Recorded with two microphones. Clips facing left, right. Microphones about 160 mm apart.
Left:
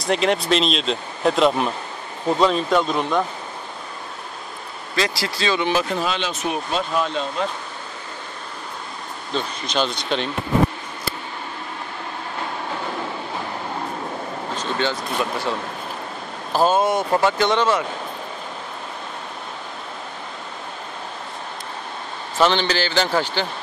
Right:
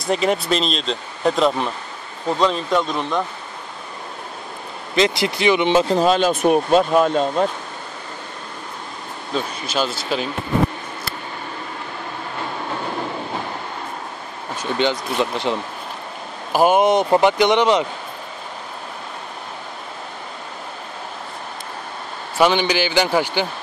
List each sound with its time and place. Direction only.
0.0 s speech: centre (ahead or behind)
4.9 s speech: 20° right (ahead or behind)
5.9 s speech: 45° right (ahead or behind)
9.3 s speech: 5° right (ahead or behind)
14.6 s speech: 15° right (ahead or behind)
16.5 s speech: 15° right (ahead or behind)
22.4 s speech: 10° right (ahead or behind)